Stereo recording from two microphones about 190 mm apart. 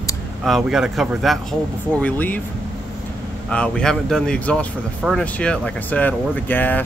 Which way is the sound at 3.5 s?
5° left (ahead or behind).